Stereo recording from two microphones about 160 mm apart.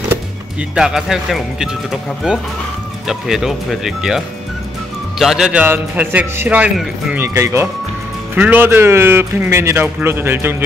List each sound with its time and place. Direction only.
0.1 s speech: 5° right (ahead or behind)
5.2 s a man's voice: 5° right (ahead or behind)